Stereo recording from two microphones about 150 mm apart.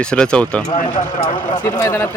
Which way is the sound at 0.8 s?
55° left (ahead or behind).